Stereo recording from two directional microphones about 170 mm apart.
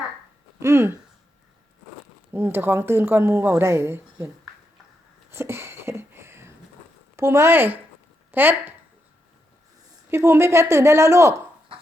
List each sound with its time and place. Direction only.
0.6 s speech: 15° right (ahead or behind)
2.3 s speech: 15° right (ahead or behind)
5.3 s a sound: 15° right (ahead or behind)
7.2 s speech: 15° right (ahead or behind)
10.1 s speech: 15° right (ahead or behind)